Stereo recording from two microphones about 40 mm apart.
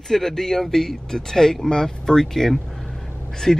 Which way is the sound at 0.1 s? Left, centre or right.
Centre.